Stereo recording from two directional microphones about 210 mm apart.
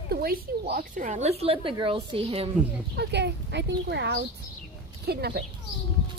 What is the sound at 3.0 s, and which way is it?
Speech, 55° right (ahead or behind).